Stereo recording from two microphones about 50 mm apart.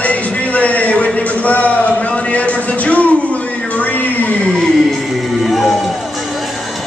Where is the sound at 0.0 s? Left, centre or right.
Left.